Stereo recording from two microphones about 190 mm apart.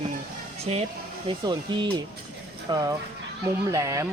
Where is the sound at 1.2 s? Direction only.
25° right (ahead or behind).